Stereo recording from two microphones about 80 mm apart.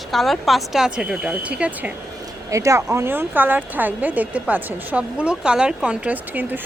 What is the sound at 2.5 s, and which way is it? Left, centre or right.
Speech, right.